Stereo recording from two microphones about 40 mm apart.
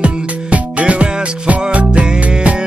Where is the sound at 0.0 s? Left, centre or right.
Right.